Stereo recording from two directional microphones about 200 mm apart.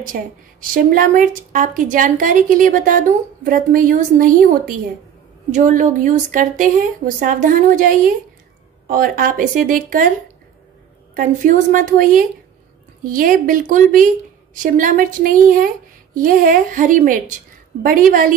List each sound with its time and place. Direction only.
0.0 s a woman's voice: 45° right (ahead or behind)
11.1 s a woman's voice: 40° right (ahead or behind)